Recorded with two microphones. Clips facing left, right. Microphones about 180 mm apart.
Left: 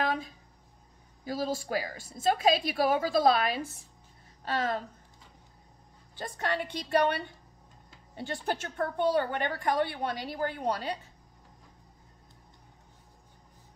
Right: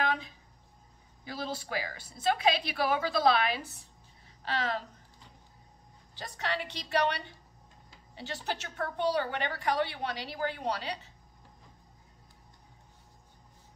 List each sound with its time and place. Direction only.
0.0 s a sound: 40° left (ahead or behind)
1.2 s a woman's voice: 45° left (ahead or behind)
6.1 s a woman's voice: 50° left (ahead or behind)